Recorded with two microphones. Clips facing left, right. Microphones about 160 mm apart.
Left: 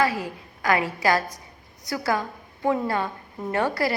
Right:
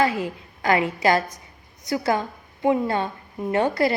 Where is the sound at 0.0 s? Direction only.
25° right (ahead or behind).